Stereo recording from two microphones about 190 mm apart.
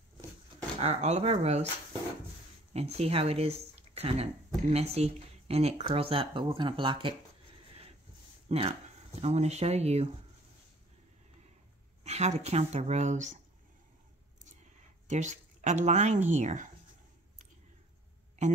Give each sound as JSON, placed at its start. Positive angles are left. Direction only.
{"t": 0.6, "sound": "speech", "side_deg": -30}
{"t": 2.7, "sound": "speech", "side_deg": -35}
{"t": 8.5, "sound": "speech", "side_deg": -35}
{"t": 12.0, "sound": "speech", "side_deg": -35}
{"t": 15.0, "sound": "speech", "side_deg": -40}